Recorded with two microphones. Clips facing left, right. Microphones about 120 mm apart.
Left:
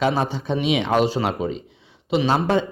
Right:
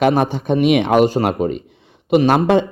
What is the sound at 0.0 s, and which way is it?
Speech, 60° right (ahead or behind).